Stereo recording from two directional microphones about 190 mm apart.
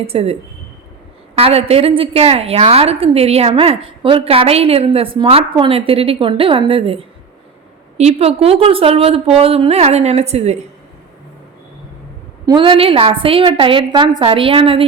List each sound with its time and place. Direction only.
0.1 s a woman's voice: 30° right (ahead or behind)
1.4 s a woman's voice: 30° right (ahead or behind)
12.5 s a woman's voice: 25° right (ahead or behind)